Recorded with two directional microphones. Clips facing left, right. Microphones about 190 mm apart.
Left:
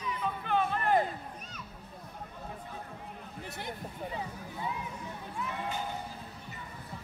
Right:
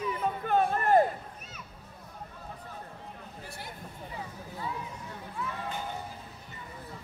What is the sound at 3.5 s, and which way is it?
A man's voice, 20° left (ahead or behind).